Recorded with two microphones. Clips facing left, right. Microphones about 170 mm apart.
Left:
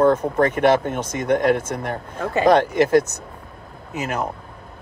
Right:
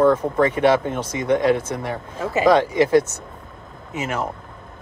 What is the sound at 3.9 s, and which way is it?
Speech, 35° left (ahead or behind).